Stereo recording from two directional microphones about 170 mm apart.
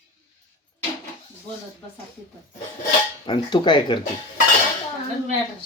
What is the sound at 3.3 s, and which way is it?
Speech, 25° left (ahead or behind).